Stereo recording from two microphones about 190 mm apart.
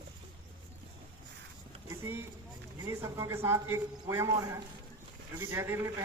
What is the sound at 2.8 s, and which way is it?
A woman's voice, 15° right (ahead or behind).